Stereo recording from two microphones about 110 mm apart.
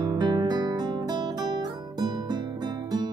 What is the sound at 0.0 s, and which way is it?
Guitar, 40° right (ahead or behind).